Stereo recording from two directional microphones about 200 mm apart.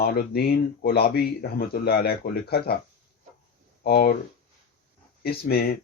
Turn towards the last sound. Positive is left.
turn(degrees=50)  # may be behind; listen again after turning